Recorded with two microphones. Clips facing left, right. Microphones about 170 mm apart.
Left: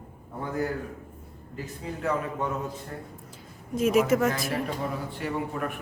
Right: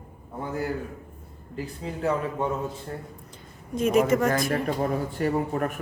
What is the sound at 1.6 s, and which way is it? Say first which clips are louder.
Speech: right 3 dB; 30° right (ahead or behind).